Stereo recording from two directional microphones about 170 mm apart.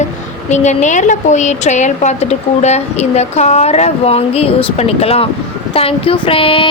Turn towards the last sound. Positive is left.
turn(degrees=30)  # may be behind; listen again after turning